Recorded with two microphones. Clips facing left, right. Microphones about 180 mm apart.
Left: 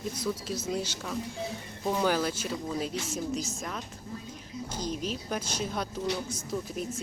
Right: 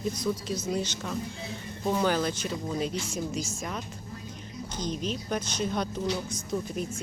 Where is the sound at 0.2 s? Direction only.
5° left (ahead or behind).